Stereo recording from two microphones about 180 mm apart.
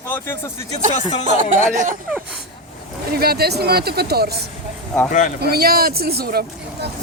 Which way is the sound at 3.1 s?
60° right (ahead or behind).